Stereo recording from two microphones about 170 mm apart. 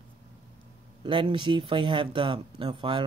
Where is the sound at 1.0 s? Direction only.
30° right (ahead or behind).